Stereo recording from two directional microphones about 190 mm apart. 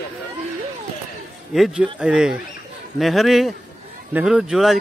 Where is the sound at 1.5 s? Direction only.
Centre (ahead or behind).